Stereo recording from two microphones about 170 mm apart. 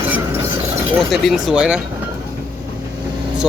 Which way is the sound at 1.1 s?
Centre (ahead or behind).